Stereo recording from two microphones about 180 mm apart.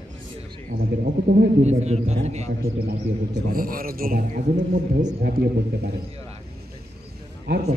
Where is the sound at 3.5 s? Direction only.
55° right (ahead or behind).